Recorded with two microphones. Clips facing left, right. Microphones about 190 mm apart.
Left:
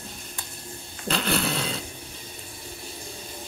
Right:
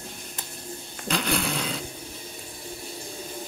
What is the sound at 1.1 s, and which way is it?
Dog, 10° right (ahead or behind).